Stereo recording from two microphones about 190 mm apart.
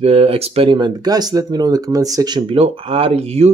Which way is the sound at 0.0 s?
30° right (ahead or behind).